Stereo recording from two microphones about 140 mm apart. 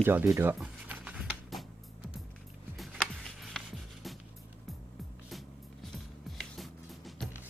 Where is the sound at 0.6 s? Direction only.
10° right (ahead or behind).